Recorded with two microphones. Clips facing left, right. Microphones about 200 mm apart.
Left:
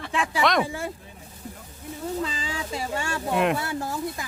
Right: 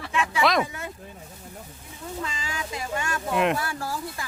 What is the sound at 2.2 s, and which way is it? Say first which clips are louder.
Speech: left 3 dB; 30° left (ahead or behind).